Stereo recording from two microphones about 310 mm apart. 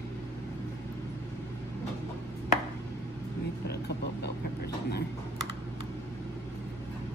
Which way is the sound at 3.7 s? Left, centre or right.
Left.